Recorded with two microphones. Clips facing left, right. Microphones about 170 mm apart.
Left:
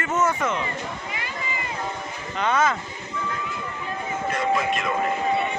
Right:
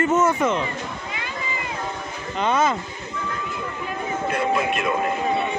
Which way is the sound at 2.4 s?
30° right (ahead or behind).